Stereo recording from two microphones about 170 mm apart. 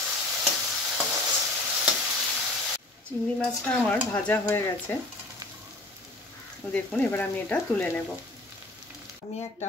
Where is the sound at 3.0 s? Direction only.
10° left (ahead or behind).